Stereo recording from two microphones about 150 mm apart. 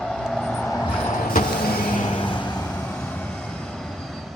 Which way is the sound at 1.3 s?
80° left.